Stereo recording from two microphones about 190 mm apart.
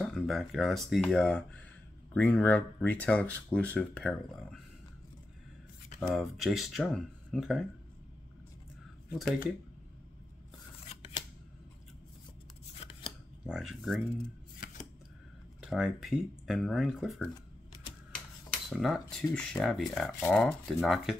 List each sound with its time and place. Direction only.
0.0 s speech: centre (ahead or behind)
5.9 s speech: centre (ahead or behind)
10.9 s scissors: 30° left (ahead or behind)
12.8 s scissors: 35° left (ahead or behind)
13.5 s speech: centre (ahead or behind)
14.6 s scissors: 45° left (ahead or behind)
15.6 s speech: centre (ahead or behind)
18.7 s speech: centre (ahead or behind)